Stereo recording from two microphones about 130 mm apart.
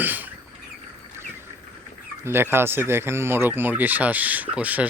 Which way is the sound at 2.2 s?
15° right (ahead or behind).